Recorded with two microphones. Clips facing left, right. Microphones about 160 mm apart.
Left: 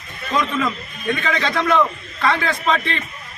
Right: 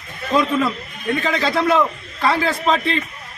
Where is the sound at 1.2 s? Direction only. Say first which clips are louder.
Right 3 dB; 35° right (ahead or behind).